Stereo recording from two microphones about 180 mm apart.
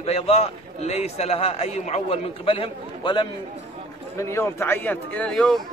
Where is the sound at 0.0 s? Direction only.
35° left (ahead or behind).